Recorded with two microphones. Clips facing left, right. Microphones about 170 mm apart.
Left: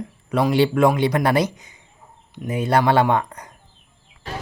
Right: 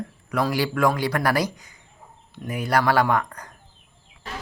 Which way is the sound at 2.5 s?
25° left (ahead or behind).